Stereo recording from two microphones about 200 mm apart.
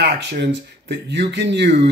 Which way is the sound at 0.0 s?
55° right (ahead or behind).